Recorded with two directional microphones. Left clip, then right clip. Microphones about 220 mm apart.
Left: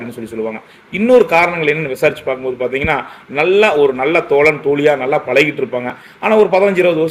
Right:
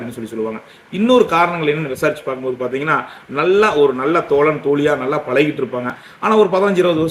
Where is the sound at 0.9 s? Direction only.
60° right (ahead or behind).